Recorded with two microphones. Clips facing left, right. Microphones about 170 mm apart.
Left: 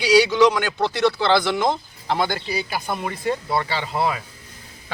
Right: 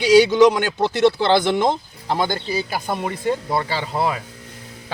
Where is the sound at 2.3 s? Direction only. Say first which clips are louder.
Right 2 dB; 40° right (ahead or behind).